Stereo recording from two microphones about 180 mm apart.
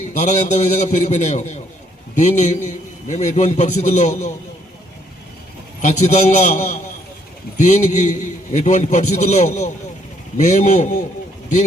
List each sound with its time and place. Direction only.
0.2 s a man's voice: 40° left (ahead or behind)
5.8 s a man's voice: 40° left (ahead or behind)